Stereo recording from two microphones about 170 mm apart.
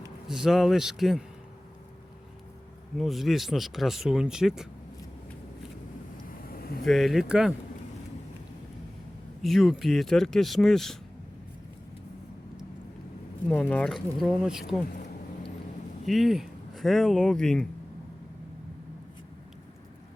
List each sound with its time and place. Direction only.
0.3 s speech: 5° right (ahead or behind)
3.0 s speech: centre (ahead or behind)
6.5 s a sound: 60° left (ahead or behind)
6.8 s speech: centre (ahead or behind)
9.4 s speech: centre (ahead or behind)
13.5 s speech: 5° left (ahead or behind)
16.0 s speech: centre (ahead or behind)